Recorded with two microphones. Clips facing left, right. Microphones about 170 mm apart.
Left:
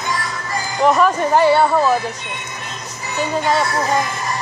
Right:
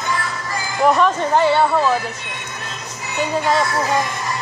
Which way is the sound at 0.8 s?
5° left (ahead or behind).